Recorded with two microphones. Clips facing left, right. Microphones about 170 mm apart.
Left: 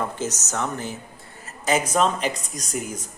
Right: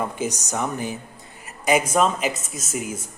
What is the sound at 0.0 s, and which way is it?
Speech, 10° right (ahead or behind).